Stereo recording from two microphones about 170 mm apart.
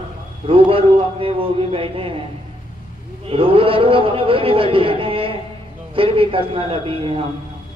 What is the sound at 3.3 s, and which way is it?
A man's voice, 35° right (ahead or behind).